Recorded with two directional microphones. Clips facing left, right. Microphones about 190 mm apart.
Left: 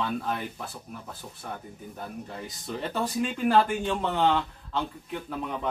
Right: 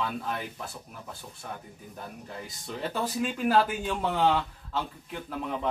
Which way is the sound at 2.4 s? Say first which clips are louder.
Even; centre (ahead or behind).